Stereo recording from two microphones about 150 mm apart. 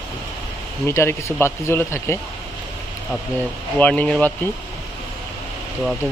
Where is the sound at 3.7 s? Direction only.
10° left (ahead or behind).